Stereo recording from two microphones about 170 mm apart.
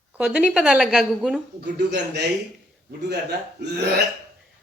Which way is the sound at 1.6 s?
80° right.